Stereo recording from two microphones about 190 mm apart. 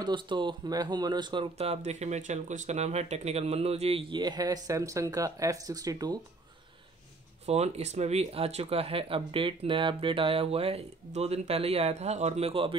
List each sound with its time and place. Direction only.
0.0 s speech: 25° right (ahead or behind)
7.4 s speech: 35° right (ahead or behind)